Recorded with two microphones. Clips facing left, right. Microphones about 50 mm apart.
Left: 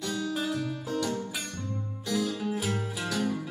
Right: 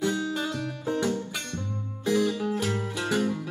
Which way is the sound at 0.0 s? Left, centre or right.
Right.